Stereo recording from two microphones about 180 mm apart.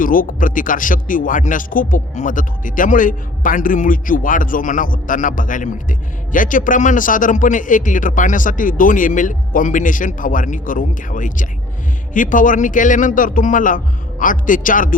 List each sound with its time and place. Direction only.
0.0 s speech: 50° left (ahead or behind)